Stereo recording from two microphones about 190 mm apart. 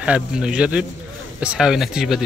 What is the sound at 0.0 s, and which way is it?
Speech, 5° right (ahead or behind).